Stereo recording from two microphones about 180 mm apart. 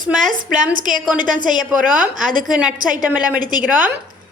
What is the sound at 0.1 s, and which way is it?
Speech, centre (ahead or behind).